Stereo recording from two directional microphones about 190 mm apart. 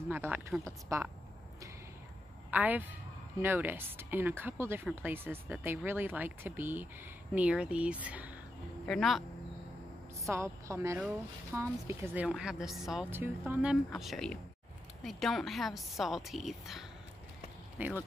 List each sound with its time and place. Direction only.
0.1 s a woman's voice: 10° right (ahead or behind)
2.5 s a woman's voice: 10° right (ahead or behind)
10.2 s a woman's voice: 15° right (ahead or behind)